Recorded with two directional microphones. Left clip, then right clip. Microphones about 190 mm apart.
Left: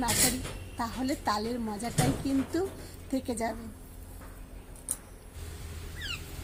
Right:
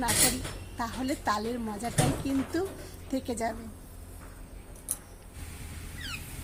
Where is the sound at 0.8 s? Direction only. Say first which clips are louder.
Even; 10° left (ahead or behind).